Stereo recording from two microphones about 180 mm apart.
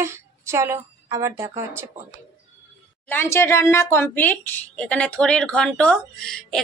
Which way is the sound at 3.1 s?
15° left (ahead or behind).